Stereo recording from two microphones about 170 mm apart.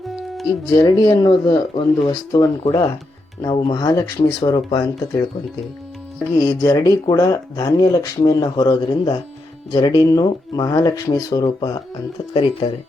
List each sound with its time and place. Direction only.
0.6 s speech: 25° left (ahead or behind)
6.4 s speech: 20° left (ahead or behind)